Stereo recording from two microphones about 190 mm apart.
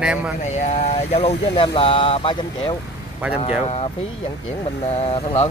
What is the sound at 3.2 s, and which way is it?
Speech, 5° right (ahead or behind).